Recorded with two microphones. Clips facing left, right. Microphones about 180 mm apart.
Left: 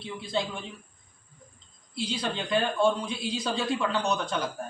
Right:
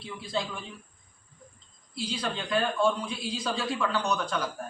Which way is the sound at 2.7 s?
25° left (ahead or behind).